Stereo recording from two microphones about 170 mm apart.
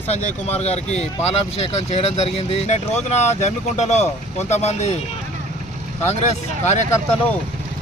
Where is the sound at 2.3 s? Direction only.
35° left (ahead or behind).